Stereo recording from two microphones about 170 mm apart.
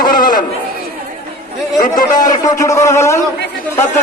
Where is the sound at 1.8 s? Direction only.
50° left (ahead or behind).